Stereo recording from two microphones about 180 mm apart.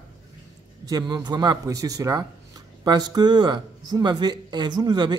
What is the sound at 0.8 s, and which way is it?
Speech, 20° right (ahead or behind).